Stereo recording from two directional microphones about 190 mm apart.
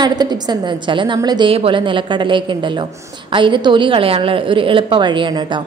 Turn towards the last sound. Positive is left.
turn(degrees=-25)  # may be behind; listen again after turning